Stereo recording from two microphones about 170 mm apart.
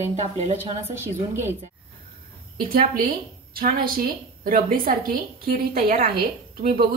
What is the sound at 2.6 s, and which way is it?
A woman's voice, 60° right (ahead or behind).